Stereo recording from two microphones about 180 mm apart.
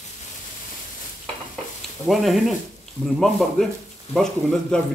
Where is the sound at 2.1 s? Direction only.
Centre (ahead or behind).